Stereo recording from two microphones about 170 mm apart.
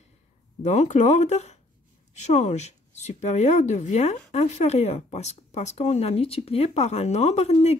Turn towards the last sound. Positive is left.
turn(degrees=40)  # may be behind; listen again after turning